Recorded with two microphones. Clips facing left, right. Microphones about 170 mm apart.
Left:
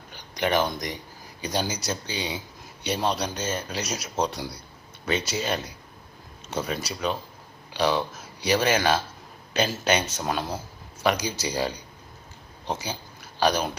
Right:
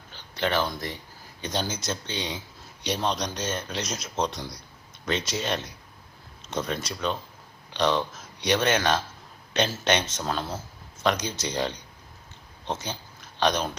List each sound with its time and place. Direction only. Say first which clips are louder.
0.1 s speech: left 2 dB; 15° left (ahead or behind)